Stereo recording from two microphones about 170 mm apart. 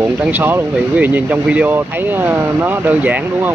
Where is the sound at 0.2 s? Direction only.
10° right (ahead or behind).